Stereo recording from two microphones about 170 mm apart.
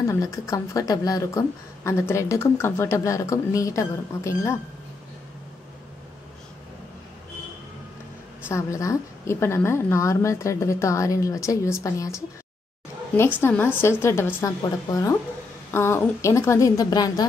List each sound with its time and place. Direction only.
0.0 s a woman's voice: 20° left (ahead or behind)
8.5 s a woman's voice: 15° left (ahead or behind)
13.4 s a woman's voice: 10° left (ahead or behind)